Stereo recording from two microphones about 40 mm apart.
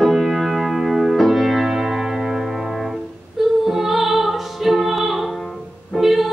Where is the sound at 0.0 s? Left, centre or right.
Centre.